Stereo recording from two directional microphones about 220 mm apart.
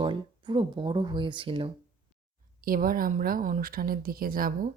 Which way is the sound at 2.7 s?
40° right (ahead or behind).